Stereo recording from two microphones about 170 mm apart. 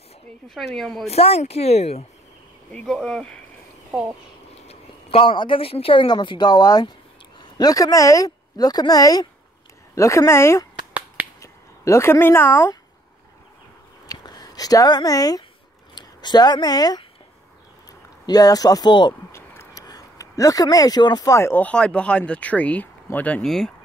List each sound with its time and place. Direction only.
0.7 s speech: centre (ahead or behind)
1.0 s speech: 35° left (ahead or behind)
2.7 s speech: 5° left (ahead or behind)
4.6 s a woman's voice: 35° left (ahead or behind); by 10.7 s 15° left (ahead or behind)
10.9 s finger snapping: 5° right (ahead or behind)
11.4 s speech: 15° left (ahead or behind)
14.0 s speech: 25° left (ahead or behind)
18.2 s speech: 20° left (ahead or behind)
19.3 s speech: 15° left (ahead or behind)